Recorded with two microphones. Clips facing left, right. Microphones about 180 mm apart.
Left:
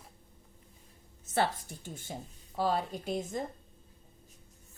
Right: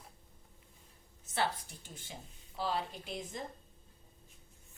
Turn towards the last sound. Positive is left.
turn(degrees=45)  # may be behind; listen again after turning